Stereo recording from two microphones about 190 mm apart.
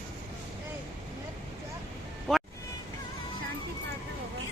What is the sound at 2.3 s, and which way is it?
Vehicle, centre (ahead or behind).